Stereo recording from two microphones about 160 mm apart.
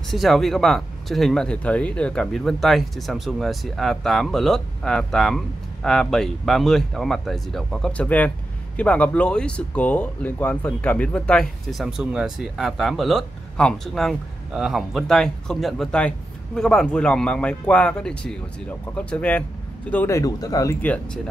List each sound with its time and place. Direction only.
0.1 s speech: centre (ahead or behind); by 20.7 s 20° left (ahead or behind)
20.8 s speech: 10° left (ahead or behind)